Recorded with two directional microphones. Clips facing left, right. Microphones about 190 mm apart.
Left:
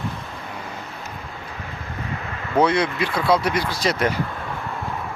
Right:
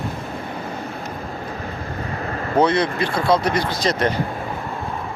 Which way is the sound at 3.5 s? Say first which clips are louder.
Right 2 dB; 10° left (ahead or behind).